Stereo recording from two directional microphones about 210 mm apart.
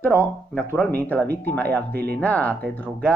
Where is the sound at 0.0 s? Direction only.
10° left (ahead or behind).